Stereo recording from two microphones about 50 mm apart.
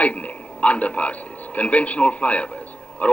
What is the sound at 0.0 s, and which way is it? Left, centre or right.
A man's voice, left.